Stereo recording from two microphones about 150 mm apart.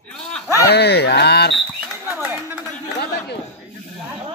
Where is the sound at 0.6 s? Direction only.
90° left.